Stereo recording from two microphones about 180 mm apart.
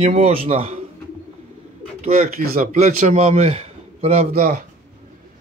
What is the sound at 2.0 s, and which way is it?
Speech, 45° right (ahead or behind).